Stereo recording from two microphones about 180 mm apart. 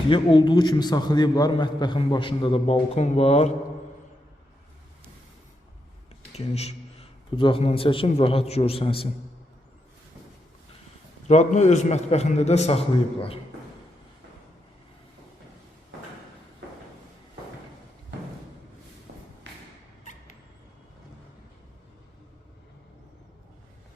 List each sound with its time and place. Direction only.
0.1 s a man's voice: 30° left (ahead or behind)
6.3 s a man's voice: 35° left (ahead or behind)
11.3 s a man's voice: 40° left (ahead or behind)